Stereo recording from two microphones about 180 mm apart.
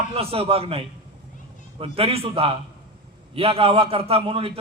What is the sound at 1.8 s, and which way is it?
A man's voice, 30° right (ahead or behind).